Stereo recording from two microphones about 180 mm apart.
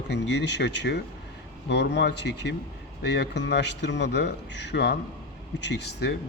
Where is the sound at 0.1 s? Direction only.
75° left (ahead or behind).